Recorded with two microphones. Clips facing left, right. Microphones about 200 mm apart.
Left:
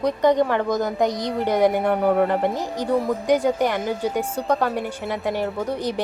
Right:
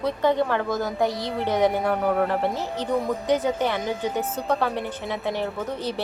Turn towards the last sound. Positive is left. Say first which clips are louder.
# left 4 dB
turn(degrees=15)  # may be behind; listen again after turning